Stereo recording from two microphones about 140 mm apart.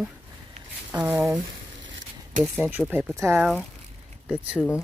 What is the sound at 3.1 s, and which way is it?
Speech, 20° right (ahead or behind).